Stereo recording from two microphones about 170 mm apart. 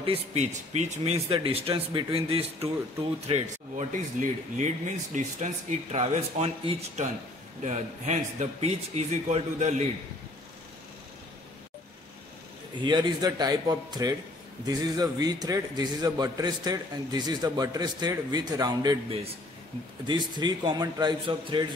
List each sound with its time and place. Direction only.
0.0 s speech: 35° right (ahead or behind)
12.8 s a man's voice: 25° right (ahead or behind)
20.1 s a man's voice: 25° right (ahead or behind)